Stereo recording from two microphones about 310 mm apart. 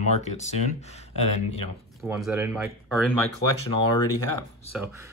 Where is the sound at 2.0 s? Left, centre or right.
Centre.